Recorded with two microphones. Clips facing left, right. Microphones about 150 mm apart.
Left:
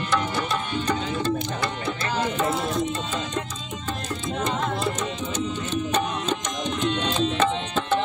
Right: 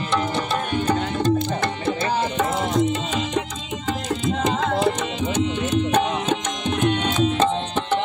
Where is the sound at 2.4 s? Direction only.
75° right (ahead or behind).